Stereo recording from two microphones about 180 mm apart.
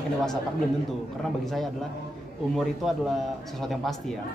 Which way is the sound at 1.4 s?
Centre (ahead or behind).